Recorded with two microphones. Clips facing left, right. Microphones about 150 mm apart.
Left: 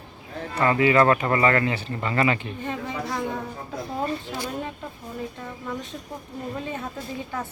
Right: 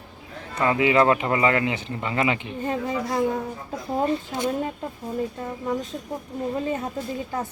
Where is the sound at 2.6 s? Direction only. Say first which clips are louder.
Right 5 dB; 35° right (ahead or behind).